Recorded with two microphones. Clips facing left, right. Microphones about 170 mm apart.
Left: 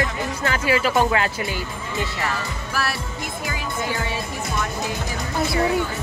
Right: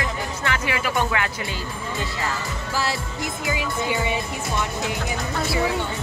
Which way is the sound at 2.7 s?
20° right (ahead or behind).